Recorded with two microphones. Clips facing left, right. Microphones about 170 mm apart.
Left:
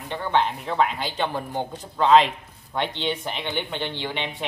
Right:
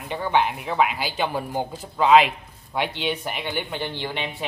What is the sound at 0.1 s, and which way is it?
Speech, 10° right (ahead or behind).